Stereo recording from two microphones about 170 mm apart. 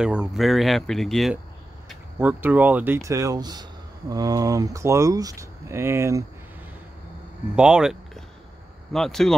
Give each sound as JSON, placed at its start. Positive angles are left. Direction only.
{"t": 0.0, "sound": "speech", "side_deg": -5}
{"t": 2.1, "sound": "speech", "side_deg": -10}
{"t": 7.5, "sound": "speech", "side_deg": -5}